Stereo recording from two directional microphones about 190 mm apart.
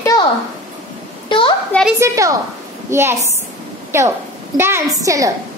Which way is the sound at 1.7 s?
Centre (ahead or behind).